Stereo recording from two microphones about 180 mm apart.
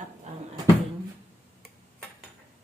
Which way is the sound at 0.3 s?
40° right (ahead or behind).